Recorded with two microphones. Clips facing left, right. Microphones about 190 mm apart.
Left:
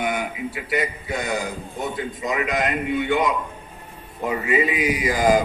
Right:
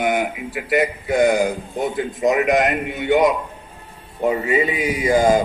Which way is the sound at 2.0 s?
70° right (ahead or behind).